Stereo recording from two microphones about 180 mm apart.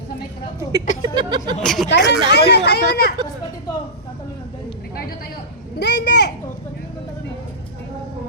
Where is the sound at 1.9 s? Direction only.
75° left (ahead or behind).